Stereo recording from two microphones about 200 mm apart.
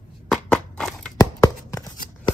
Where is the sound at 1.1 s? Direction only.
15° left (ahead or behind).